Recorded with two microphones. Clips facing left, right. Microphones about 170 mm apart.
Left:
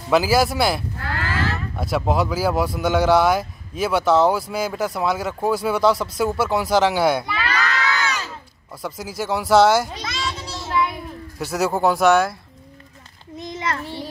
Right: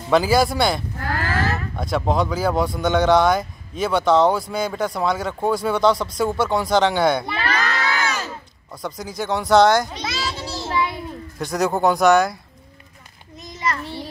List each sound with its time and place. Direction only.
0.1 s speech: 5° left (ahead or behind)
7.3 s crowd: 40° right (ahead or behind)
8.8 s speech: 5° left (ahead or behind)
10.0 s child singing: 30° right (ahead or behind)
10.8 s a child's voice: 5° left (ahead or behind)